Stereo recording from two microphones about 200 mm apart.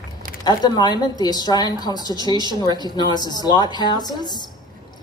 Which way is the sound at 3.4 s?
20° left (ahead or behind).